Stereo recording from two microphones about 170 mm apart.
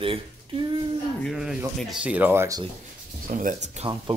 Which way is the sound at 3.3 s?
50° right (ahead or behind).